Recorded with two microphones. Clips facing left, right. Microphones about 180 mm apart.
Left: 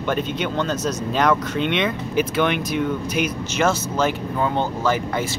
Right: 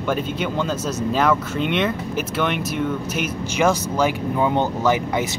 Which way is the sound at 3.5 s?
10° right (ahead or behind).